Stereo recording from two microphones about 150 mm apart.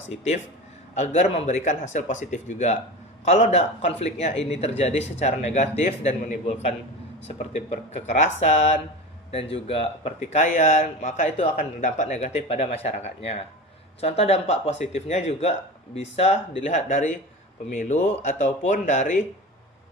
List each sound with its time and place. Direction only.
0.9 s speech: 50° left (ahead or behind)
6.5 s a man's voice: 40° left (ahead or behind)